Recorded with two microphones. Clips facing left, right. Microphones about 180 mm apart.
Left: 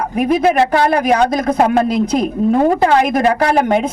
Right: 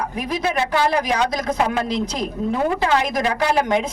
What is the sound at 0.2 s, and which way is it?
Speech, 55° left (ahead or behind).